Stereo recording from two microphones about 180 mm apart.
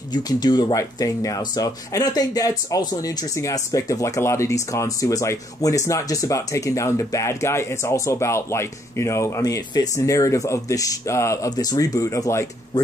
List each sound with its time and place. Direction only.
0.1 s speech: 25° left (ahead or behind)